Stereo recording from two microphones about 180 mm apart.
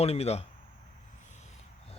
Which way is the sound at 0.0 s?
35° left (ahead or behind).